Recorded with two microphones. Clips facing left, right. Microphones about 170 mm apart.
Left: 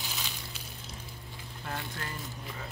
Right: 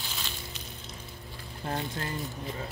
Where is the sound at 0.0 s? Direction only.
10° left (ahead or behind).